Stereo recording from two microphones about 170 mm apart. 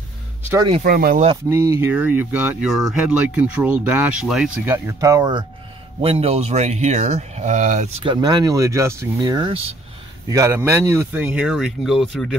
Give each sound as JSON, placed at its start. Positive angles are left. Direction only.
{"t": 0.8, "sound": "speech", "side_deg": -60}
{"t": 1.5, "sound": "speech", "side_deg": -15}
{"t": 4.7, "sound": "speech", "side_deg": -15}
{"t": 5.9, "sound": "speech", "side_deg": -35}
{"t": 8.0, "sound": "speech", "side_deg": -25}